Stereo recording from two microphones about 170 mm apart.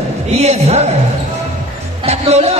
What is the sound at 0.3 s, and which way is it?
Speech, 40° right (ahead or behind).